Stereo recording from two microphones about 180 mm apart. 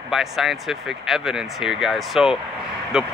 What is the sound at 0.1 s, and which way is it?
Speech, centre (ahead or behind).